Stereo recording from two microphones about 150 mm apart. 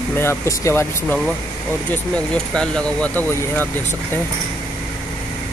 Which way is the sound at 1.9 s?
5° left (ahead or behind).